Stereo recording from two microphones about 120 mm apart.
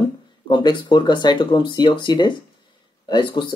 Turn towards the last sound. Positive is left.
turn(degrees=40)  # may be behind; listen again after turning